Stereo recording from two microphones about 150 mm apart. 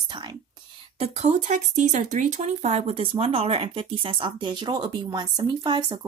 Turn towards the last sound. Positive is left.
turn(degrees=-30)  # may be behind; listen again after turning